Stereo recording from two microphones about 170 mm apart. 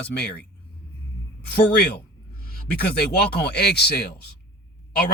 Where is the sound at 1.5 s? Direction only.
75° left (ahead or behind).